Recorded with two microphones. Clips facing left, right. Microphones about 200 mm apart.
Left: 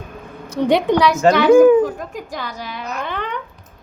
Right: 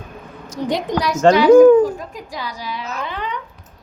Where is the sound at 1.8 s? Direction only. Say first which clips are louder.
Right 1 dB; 50° left (ahead or behind).